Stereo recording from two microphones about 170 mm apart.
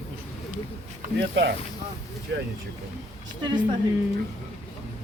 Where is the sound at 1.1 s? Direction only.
90° right.